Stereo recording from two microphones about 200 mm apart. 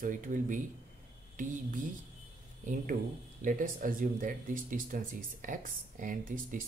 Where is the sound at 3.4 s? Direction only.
45° right (ahead or behind).